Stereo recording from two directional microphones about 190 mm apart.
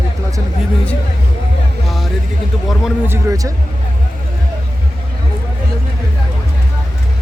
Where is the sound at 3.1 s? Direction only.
20° right (ahead or behind).